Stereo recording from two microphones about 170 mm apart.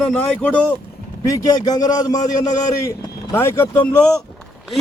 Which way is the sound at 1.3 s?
20° left (ahead or behind).